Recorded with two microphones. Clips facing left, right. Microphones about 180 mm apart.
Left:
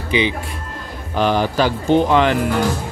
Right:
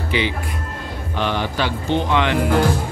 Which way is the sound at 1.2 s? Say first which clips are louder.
Left 6 dB; 40° left (ahead or behind).